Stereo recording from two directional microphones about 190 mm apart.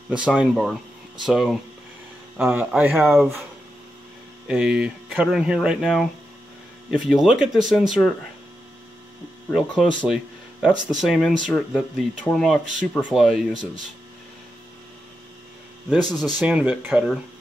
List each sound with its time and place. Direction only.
0.4 s speech: centre (ahead or behind)
4.5 s speech: 5° right (ahead or behind)
9.5 s speech: centre (ahead or behind)
15.9 s speech: centre (ahead or behind)